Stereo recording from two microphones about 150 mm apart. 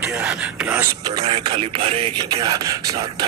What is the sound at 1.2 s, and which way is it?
Music, 35° right (ahead or behind).